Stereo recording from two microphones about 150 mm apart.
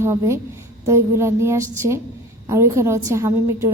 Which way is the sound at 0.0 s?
20° right (ahead or behind).